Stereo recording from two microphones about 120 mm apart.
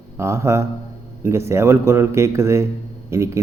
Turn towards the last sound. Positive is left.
turn(degrees=-25)  # may be behind; listen again after turning